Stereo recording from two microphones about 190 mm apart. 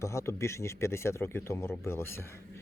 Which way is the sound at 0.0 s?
15° left (ahead or behind).